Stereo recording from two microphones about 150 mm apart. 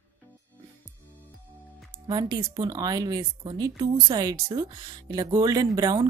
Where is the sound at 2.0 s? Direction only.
30° right (ahead or behind).